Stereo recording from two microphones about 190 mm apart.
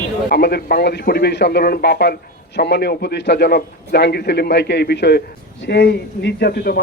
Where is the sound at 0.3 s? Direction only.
55° left (ahead or behind).